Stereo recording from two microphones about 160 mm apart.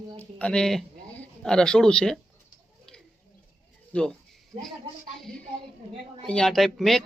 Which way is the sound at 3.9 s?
5° left (ahead or behind).